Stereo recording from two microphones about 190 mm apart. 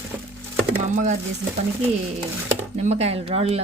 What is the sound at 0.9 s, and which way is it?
Speech, 40° right (ahead or behind).